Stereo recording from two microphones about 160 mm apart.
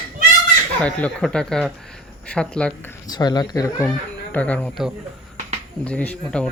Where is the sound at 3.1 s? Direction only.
25° left (ahead or behind).